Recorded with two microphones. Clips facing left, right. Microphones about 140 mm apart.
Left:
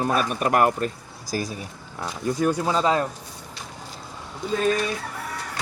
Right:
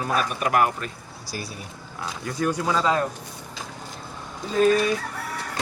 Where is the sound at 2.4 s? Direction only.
20° left (ahead or behind).